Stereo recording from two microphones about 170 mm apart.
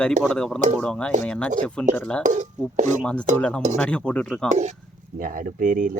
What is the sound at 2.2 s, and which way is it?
Speech, 45° right (ahead or behind).